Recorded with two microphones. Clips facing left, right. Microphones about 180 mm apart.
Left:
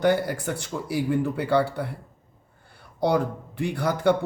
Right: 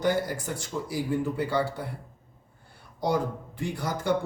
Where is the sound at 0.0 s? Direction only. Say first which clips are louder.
Left 4 dB; 65° left (ahead or behind).